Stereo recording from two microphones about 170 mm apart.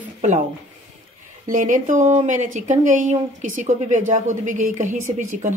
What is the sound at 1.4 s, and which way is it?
A woman's voice, 50° right (ahead or behind).